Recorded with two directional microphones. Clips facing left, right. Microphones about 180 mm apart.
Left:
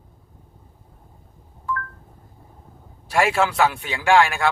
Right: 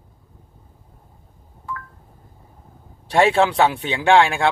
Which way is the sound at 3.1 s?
25° right (ahead or behind).